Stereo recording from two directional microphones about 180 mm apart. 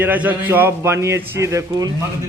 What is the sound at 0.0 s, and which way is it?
A man's voice, 10° right (ahead or behind).